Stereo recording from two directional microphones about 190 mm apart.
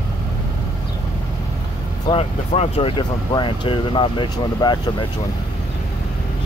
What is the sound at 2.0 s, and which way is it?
Speech, 30° left (ahead or behind).